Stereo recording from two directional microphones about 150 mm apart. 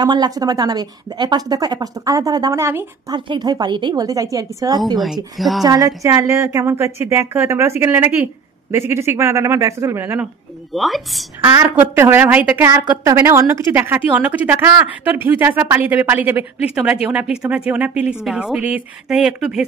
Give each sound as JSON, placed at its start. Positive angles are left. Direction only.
{"t": 0.0, "sound": "speech", "side_deg": -25}
{"t": 3.1, "sound": "speech", "side_deg": -30}
{"t": 4.9, "sound": "a woman's voice", "side_deg": 0}
{"t": 5.6, "sound": "a woman's voice", "side_deg": -25}
{"t": 10.7, "sound": "a woman's voice", "side_deg": 0}
{"t": 11.4, "sound": "a woman's voice", "side_deg": -15}